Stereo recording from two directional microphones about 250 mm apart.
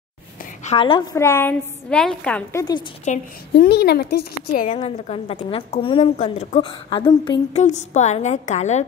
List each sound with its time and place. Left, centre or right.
0.7 s a woman's voice: left; by 2.6 s centre
3.1 s a woman's voice: left
3.5 s a woman's voice: left